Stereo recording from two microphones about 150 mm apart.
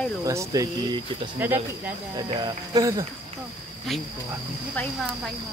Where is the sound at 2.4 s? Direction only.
25° right (ahead or behind).